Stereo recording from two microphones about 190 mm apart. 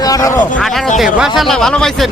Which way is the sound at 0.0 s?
20° left (ahead or behind).